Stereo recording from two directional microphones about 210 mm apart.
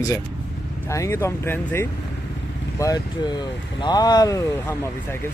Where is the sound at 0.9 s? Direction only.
15° left (ahead or behind).